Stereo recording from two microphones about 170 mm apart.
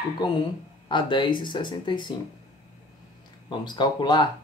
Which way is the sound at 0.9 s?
30° left (ahead or behind).